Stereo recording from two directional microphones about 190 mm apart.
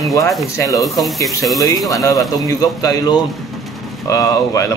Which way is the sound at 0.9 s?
Centre (ahead or behind).